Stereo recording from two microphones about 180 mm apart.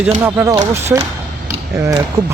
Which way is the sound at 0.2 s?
10° right (ahead or behind).